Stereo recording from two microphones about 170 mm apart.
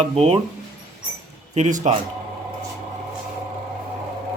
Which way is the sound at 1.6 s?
45° right (ahead or behind).